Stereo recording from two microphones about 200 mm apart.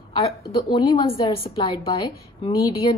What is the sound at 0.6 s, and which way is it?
A woman's voice, 20° left (ahead or behind).